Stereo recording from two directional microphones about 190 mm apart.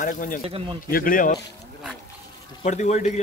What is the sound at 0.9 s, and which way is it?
Speech, 45° left (ahead or behind).